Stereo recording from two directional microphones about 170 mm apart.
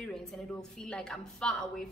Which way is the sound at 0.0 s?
Centre (ahead or behind).